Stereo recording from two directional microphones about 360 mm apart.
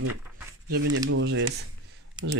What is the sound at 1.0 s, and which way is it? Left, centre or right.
Speech, right.